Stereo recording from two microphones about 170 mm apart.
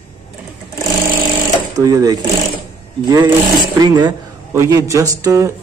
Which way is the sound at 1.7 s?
20° right (ahead or behind).